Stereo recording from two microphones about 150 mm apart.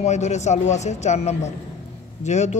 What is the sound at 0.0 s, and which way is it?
A woman's voice, 50° left (ahead or behind).